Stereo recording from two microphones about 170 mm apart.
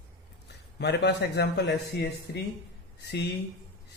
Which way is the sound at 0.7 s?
85° left.